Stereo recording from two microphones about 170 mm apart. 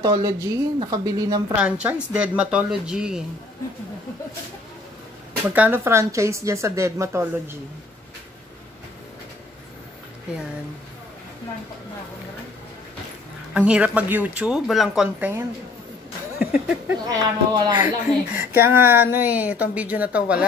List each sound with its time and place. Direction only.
0.0 s speech: 20° right (ahead or behind)
1.5 s a woman's voice: 5° right (ahead or behind)
5.5 s a woman's voice: 10° right (ahead or behind)
13.5 s a woman's voice: 5° right (ahead or behind)
16.3 s a sound: 10° right (ahead or behind)
17.0 s speech: 20° right (ahead or behind)
18.5 s a woman's voice: 15° right (ahead or behind)